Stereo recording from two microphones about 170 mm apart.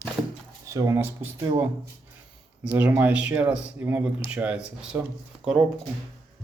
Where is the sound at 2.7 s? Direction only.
10° right (ahead or behind).